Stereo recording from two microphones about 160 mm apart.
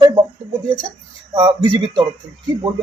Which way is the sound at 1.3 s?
30° right (ahead or behind).